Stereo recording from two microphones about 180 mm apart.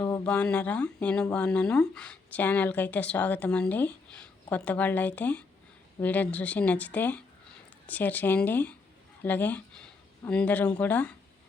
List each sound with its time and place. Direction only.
0.0 s speech: 10° left (ahead or behind)